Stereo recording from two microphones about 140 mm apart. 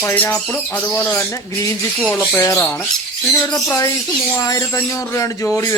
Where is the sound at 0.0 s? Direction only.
15° left (ahead or behind).